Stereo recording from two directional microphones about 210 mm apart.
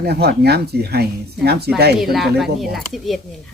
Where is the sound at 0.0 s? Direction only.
50° right (ahead or behind).